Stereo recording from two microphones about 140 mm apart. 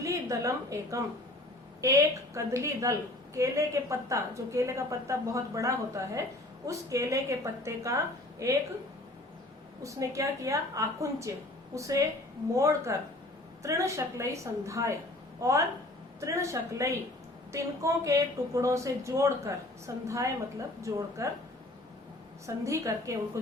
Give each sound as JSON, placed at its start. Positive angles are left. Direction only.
{"t": 0.0, "sound": "a woman's voice", "side_deg": -20}
{"t": 9.8, "sound": "a woman's voice", "side_deg": -25}
{"t": 22.4, "sound": "a woman's voice", "side_deg": -20}